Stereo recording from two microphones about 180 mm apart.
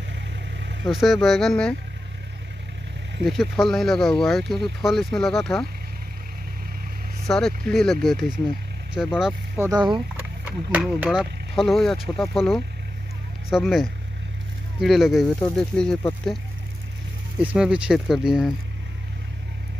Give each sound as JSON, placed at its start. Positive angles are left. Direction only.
{"t": 0.1, "sound": "vehicle", "side_deg": -75}
{"t": 0.8, "sound": "speech", "side_deg": 0}
{"t": 3.3, "sound": "speech", "side_deg": 0}
{"t": 7.2, "sound": "speech", "side_deg": 5}
{"t": 9.6, "sound": "speech", "side_deg": -20}
{"t": 10.7, "sound": "speech", "side_deg": -10}
{"t": 14.8, "sound": "speech", "side_deg": 0}
{"t": 17.4, "sound": "speech", "side_deg": -5}